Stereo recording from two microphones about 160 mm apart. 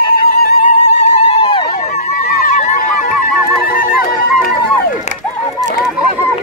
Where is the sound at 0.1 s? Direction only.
65° left (ahead or behind).